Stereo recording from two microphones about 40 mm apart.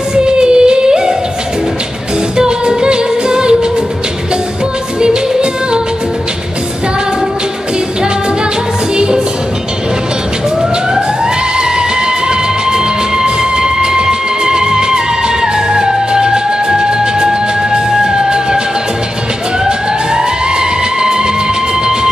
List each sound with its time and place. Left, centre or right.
0.1 s music: right
2.3 s music: centre
5.0 s music: right
8.9 s music: right
12.3 s music: centre
20.2 s music: centre